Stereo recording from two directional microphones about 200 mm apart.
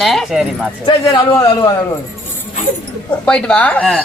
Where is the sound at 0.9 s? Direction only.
25° left (ahead or behind).